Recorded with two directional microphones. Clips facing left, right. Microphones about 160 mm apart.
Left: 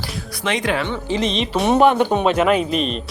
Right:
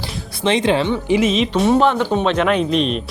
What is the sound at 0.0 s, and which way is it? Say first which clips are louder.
Speech: right 4 dB; 25° right (ahead or behind).